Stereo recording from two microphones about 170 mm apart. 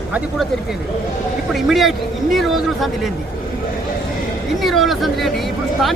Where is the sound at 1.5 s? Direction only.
Centre (ahead or behind).